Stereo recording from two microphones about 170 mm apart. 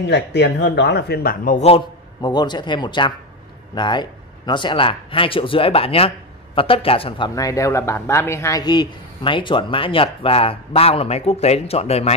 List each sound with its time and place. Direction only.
0.1 s speech: 90° left; by 1.6 s 55° left (ahead or behind)
2.2 s speech: 25° left (ahead or behind)